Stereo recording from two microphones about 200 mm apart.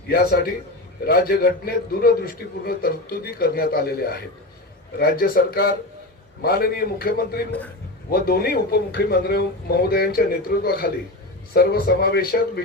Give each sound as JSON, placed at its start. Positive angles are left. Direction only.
{"t": 0.1, "sound": "a man's voice", "side_deg": 50}